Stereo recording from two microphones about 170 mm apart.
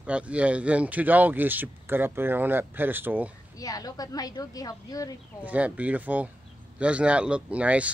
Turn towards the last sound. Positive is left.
turn(degrees=-5)  # may be behind; listen again after turning